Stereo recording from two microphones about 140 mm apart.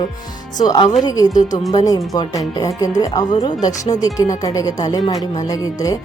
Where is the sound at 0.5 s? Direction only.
25° left (ahead or behind).